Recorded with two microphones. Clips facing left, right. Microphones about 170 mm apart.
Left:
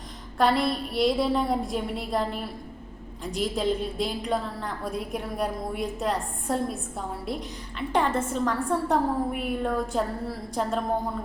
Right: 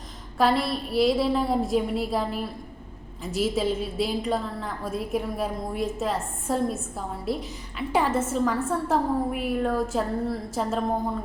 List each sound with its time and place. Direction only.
0.3 s a woman's voice: centre (ahead or behind)